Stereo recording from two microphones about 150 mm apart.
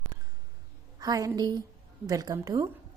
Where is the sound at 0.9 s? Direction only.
25° right (ahead or behind).